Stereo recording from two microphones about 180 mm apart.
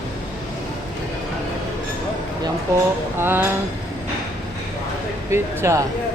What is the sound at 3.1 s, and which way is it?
Speech, 10° right (ahead or behind).